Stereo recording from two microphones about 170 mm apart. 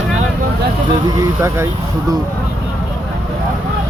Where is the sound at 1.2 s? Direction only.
15° right (ahead or behind).